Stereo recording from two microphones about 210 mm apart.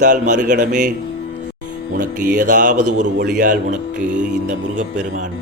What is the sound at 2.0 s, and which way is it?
Music, 40° right (ahead or behind).